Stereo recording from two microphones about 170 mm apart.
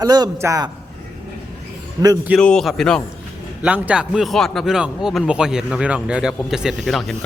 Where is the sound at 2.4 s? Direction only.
5° left (ahead or behind).